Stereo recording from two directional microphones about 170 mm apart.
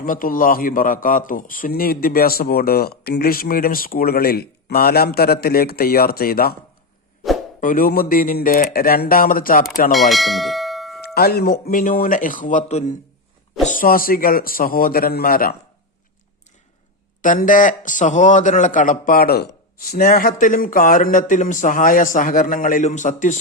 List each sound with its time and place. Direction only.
0.0 s a man's voice: 55° left (ahead or behind)
7.6 s a man's voice: 55° left (ahead or behind)
9.9 s church bell: centre (ahead or behind)
11.0 s speech: 65° left (ahead or behind); by 13.0 s 45° left (ahead or behind)
13.7 s a man's voice: 55° left (ahead or behind)
17.2 s speech: 50° left (ahead or behind)